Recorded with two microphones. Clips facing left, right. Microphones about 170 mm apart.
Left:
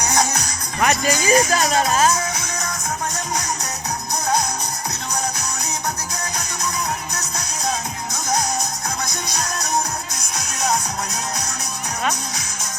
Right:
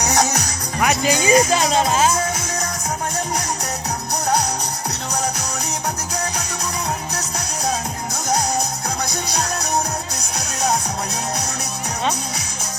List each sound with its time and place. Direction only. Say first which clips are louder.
0.0 s music: right 2 dB; 40° right (ahead or behind)
0.8 s speech: right 1 dB; 10° right (ahead or behind)
1.1 s speech: right 2 dB; 20° right (ahead or behind)
10.3 s music: right 1 dB; 30° right (ahead or behind)